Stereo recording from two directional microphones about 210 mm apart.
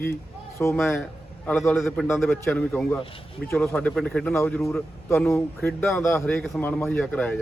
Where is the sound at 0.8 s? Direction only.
Centre (ahead or behind).